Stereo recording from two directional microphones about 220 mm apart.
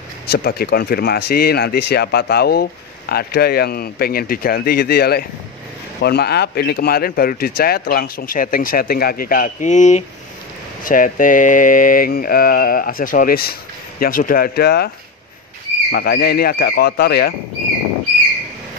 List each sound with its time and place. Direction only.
0.3 s speech: 45° left (ahead or behind)
15.9 s speech: 45° left (ahead or behind)